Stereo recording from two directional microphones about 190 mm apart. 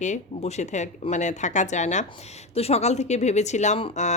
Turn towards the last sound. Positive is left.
turn(degrees=40)  # may be behind; listen again after turning